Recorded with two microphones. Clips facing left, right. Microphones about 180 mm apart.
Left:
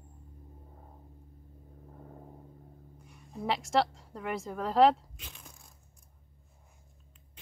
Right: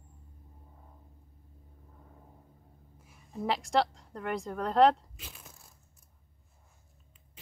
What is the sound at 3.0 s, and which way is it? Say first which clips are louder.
A woman's voice: right 2 dB; centre (ahead or behind).